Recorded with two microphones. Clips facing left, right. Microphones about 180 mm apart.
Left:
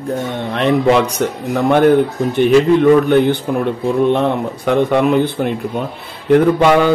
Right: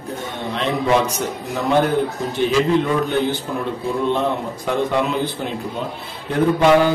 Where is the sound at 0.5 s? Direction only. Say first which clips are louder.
Left 6 dB; 65° left (ahead or behind).